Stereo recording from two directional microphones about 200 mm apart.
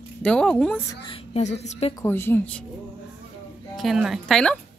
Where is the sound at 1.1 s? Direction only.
30° left (ahead or behind).